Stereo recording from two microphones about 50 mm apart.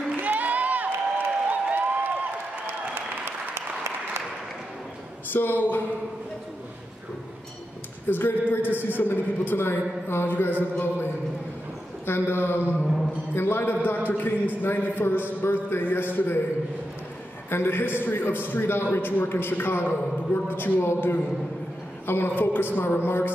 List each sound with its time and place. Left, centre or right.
0.2 s a sound: right
3.3 s applause: right
5.3 s speech: left
8.1 s a man's voice: left
12.1 s a man's voice: left
12.7 s a sound: centre
13.3 s a man's voice: left
17.5 s a man's voice: left
22.0 s a man's voice: left